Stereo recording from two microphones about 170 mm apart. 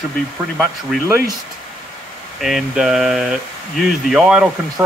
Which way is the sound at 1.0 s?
15° right (ahead or behind).